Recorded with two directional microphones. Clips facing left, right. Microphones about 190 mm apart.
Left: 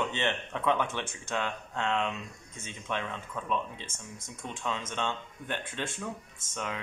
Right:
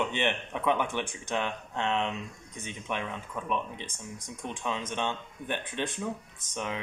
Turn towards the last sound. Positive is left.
turn(degrees=-20)  # may be behind; listen again after turning